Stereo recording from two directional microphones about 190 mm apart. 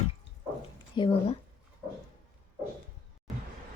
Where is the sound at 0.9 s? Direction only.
25° left (ahead or behind).